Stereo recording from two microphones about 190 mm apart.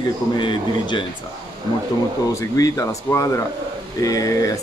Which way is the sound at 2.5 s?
15° left (ahead or behind).